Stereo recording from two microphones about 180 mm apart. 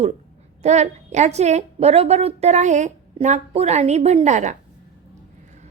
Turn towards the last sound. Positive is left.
turn(degrees=-40)  # may be behind; listen again after turning